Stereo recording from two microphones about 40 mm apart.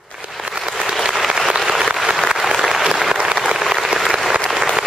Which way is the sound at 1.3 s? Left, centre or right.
Centre.